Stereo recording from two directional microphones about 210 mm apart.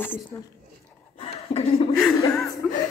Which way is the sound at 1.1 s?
25° left (ahead or behind).